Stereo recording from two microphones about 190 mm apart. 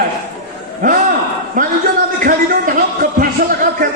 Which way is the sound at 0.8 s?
45° right (ahead or behind).